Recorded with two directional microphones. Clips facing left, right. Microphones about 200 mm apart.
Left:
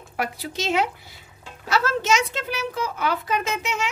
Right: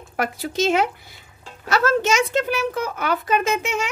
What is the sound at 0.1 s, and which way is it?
A woman's voice, 45° right (ahead or behind).